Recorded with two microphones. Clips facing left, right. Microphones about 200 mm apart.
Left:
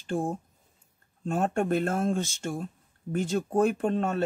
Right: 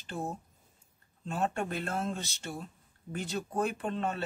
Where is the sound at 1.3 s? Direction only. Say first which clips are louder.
Left 7 dB; 50° left (ahead or behind).